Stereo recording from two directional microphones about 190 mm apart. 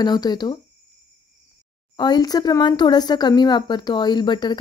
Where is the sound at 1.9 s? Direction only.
20° left (ahead or behind).